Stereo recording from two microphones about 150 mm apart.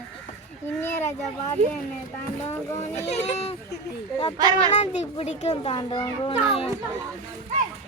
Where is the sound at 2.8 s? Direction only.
50° left (ahead or behind).